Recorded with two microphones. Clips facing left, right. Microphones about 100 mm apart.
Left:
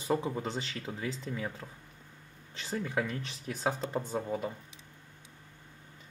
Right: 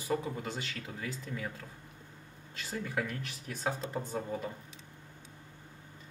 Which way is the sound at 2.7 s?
20° left (ahead or behind).